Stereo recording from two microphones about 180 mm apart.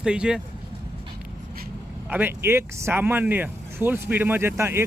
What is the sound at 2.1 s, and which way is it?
Speech, 10° right (ahead or behind).